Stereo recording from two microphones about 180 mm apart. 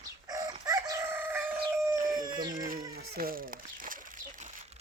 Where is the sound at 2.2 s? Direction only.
25° right (ahead or behind).